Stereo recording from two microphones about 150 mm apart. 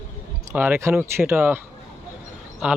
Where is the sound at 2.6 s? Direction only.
10° right (ahead or behind).